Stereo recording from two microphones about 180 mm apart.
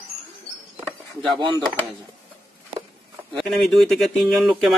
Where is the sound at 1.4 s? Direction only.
25° right (ahead or behind).